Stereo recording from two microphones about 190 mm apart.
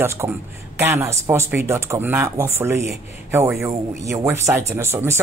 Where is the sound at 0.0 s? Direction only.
15° right (ahead or behind).